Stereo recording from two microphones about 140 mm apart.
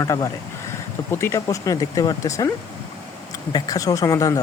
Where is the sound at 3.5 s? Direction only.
25° left (ahead or behind).